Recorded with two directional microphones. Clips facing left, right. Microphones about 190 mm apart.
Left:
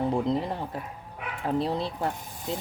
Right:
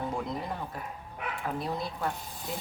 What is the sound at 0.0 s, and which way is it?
Speech, 30° left (ahead or behind).